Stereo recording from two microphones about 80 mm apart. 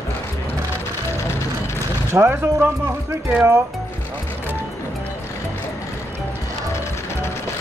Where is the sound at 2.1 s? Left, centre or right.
Right.